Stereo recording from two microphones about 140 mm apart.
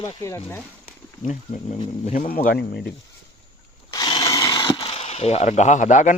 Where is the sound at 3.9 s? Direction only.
30° left (ahead or behind).